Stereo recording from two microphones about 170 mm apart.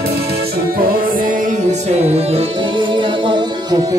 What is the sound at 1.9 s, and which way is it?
Music, 35° right (ahead or behind).